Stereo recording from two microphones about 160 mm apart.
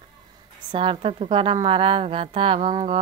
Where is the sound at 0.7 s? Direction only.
30° right (ahead or behind).